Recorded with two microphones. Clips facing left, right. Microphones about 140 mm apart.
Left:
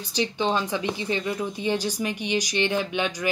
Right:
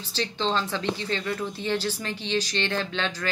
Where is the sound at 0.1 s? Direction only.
15° left (ahead or behind).